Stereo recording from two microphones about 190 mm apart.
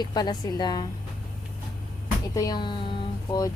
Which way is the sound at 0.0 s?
20° left (ahead or behind).